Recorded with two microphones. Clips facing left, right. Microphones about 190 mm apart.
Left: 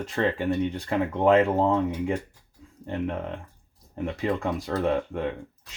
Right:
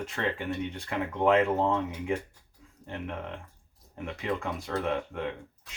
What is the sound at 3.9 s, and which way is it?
Speech, 35° left (ahead or behind).